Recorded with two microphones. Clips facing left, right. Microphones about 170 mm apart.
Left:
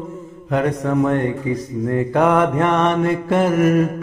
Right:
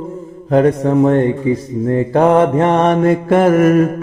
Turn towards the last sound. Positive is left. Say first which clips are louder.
# right 5 dB
turn(degrees=-50)  # may be behind; listen again after turning